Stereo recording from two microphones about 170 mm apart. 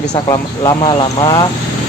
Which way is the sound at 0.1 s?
25° left (ahead or behind).